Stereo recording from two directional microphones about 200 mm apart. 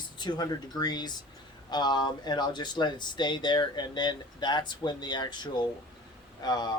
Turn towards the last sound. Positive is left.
turn(degrees=20)  # may be behind; listen again after turning